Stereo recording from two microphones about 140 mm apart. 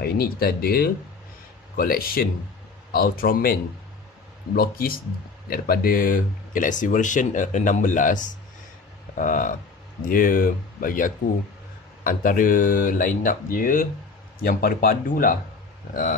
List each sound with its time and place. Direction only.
0.0 s speech: 90° left
4.6 s speech: 90° left
15.9 s speech: 75° left (ahead or behind)